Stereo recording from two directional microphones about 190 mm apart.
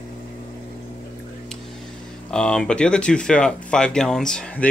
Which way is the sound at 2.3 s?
5° left (ahead or behind).